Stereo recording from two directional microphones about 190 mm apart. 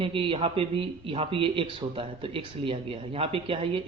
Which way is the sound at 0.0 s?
30° right (ahead or behind).